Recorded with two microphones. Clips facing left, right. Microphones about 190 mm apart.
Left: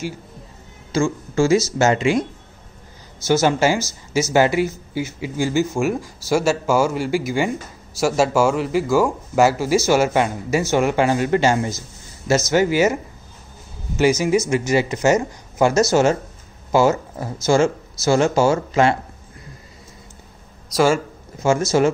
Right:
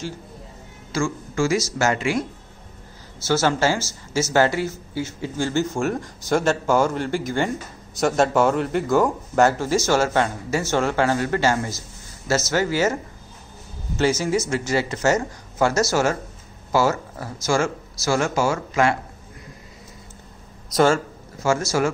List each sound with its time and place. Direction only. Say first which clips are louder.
0.9 s speech: left 4 dB; 25° left (ahead or behind)
3.3 s speech: left 3 dB; 15° left (ahead or behind)
20.9 s speech: left 2 dB; 20° left (ahead or behind)